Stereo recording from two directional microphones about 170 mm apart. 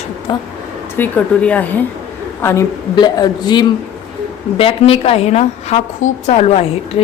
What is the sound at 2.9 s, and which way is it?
A woman's voice, 25° left (ahead or behind).